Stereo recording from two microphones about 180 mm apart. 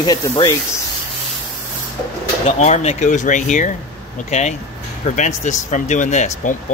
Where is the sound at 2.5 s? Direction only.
40° left (ahead or behind).